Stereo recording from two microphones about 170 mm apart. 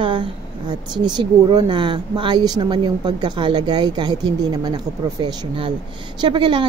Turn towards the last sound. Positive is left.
turn(degrees=-30)  # may be behind; listen again after turning